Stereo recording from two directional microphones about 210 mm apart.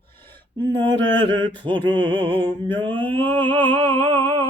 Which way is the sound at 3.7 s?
25° right (ahead or behind).